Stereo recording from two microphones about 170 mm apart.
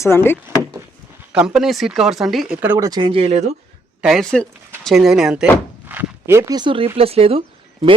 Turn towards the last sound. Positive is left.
turn(degrees=-35)  # may be behind; listen again after turning